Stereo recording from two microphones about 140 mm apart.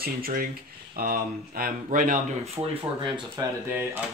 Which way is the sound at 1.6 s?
70° right (ahead or behind).